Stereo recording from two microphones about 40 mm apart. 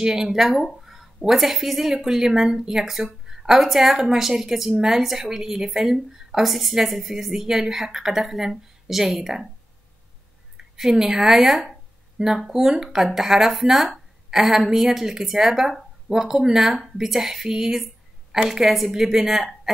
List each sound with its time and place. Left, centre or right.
0.0 s a woman's voice: centre
10.6 s a woman's voice: centre
12.2 s speech: right
12.5 s a woman's voice: centre